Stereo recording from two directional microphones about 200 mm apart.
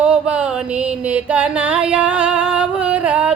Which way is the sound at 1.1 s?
5° right (ahead or behind).